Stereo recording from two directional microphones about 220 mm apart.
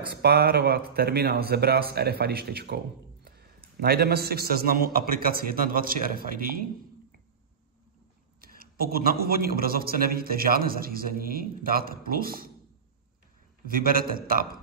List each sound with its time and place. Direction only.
0.1 s speech: 45° right (ahead or behind)
3.8 s a man's voice: 45° right (ahead or behind)
8.4 s a man's voice: 40° right (ahead or behind)
13.7 s a man's voice: 40° right (ahead or behind)